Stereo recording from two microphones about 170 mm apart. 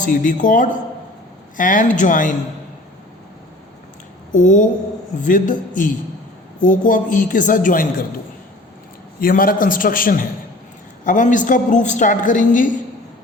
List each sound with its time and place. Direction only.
0.0 s a woman's voice: 50° left (ahead or behind)
4.3 s a woman's voice: 50° left (ahead or behind)
9.2 s a man's voice: 55° left (ahead or behind)